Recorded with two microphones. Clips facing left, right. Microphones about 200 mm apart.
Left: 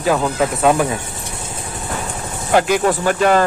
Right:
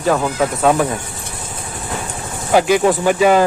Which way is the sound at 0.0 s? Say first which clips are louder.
Even; centre (ahead or behind).